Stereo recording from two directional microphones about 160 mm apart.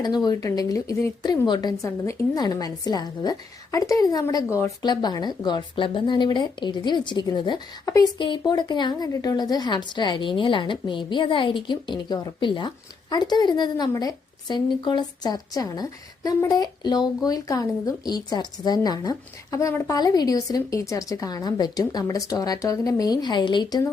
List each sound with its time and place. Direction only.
0.0 s a woman's voice: 25° left (ahead or behind)